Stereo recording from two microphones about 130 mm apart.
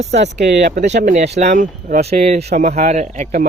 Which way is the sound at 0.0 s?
55° right (ahead or behind).